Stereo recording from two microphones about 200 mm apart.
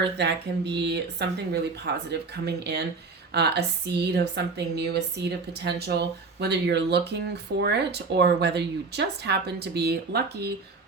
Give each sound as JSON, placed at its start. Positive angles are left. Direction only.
{"t": 0.2, "sound": "speech", "side_deg": -55}